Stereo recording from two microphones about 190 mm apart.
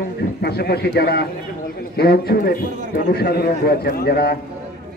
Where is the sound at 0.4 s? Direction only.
55° left (ahead or behind).